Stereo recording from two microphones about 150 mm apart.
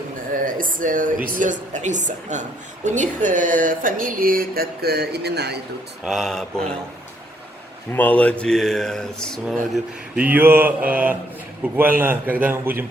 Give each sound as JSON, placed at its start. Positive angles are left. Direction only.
{"t": 0.4, "sound": "a woman's voice", "side_deg": -65}
{"t": 6.1, "sound": "speech", "side_deg": 0}
{"t": 7.9, "sound": "speech", "side_deg": 10}
{"t": 9.7, "sound": "mantra", "side_deg": -10}